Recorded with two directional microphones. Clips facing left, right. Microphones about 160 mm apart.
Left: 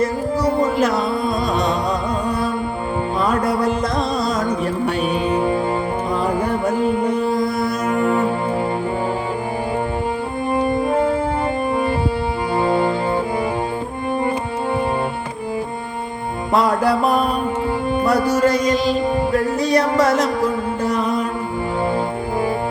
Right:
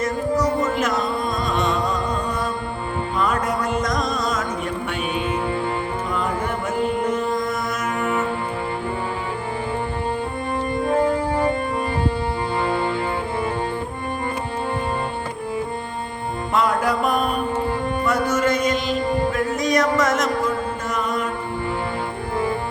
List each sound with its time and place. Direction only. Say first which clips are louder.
0.0 s music: left 2 dB; 30° left (ahead or behind)
3.2 s music: left 3 dB; 35° left (ahead or behind)
6.7 s music: left 2 dB; 35° left (ahead or behind)
12.6 s music: left 6 dB; 15° left (ahead or behind)
16.5 s music: left 4 dB; 35° left (ahead or behind)